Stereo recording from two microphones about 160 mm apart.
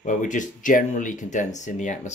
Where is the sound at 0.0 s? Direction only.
55° left (ahead or behind).